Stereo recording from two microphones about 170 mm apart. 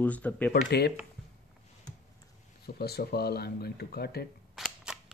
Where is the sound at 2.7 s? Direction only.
65° left (ahead or behind).